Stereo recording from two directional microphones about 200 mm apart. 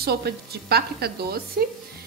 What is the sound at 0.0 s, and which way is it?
A woman's voice, 50° right (ahead or behind).